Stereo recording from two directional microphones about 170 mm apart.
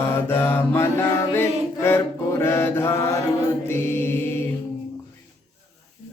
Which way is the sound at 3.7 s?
15° left (ahead or behind).